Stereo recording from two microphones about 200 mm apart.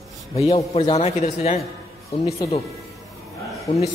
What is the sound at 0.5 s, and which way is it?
A man's voice, 30° left (ahead or behind).